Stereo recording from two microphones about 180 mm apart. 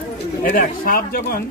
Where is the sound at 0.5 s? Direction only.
50° left (ahead or behind).